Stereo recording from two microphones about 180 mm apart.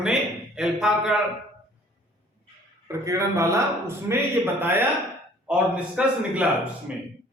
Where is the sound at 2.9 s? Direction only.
15° right (ahead or behind).